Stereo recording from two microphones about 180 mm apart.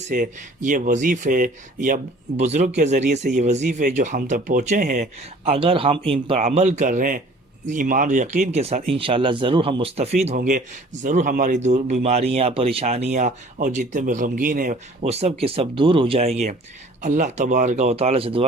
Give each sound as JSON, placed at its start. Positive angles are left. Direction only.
{"t": 0.1, "sound": "speech", "side_deg": -45}
{"t": 5.5, "sound": "speech", "side_deg": -30}
{"t": 9.0, "sound": "speech", "side_deg": -30}